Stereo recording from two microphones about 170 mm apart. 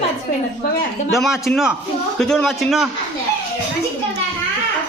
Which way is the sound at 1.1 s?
Centre (ahead or behind).